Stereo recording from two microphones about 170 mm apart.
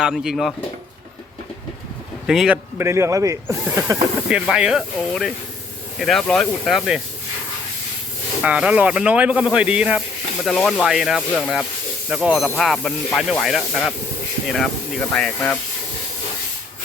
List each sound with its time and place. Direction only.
0.0 s speech: 5° right (ahead or behind)
2.2 s speech: 5° right (ahead or behind)
2.7 s speech: 15° right (ahead or behind)
4.3 s speech: 5° right (ahead or behind)
8.4 s speech: 5° right (ahead or behind)